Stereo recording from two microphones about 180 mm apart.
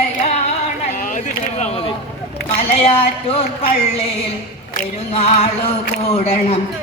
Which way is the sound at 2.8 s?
35° left (ahead or behind).